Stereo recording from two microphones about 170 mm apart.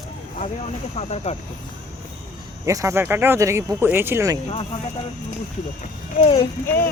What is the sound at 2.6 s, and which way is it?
Speech, 20° right (ahead or behind).